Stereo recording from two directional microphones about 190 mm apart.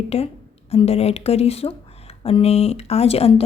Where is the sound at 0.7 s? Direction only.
30° left (ahead or behind).